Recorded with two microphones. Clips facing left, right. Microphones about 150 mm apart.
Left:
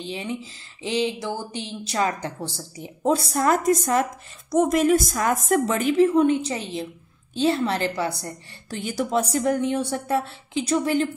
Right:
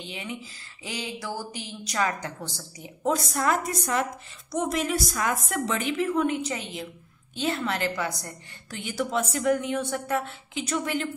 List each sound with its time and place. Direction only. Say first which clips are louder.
0.0 s a woman's voice: left 6 dB; 30° left (ahead or behind)
5.9 s speech: left 9 dB; 30° left (ahead or behind)